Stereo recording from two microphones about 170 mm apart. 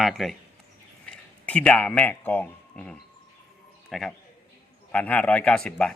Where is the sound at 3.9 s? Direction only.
Centre (ahead or behind).